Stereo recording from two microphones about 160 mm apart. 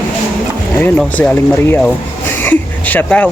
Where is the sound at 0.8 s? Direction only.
10° left (ahead or behind).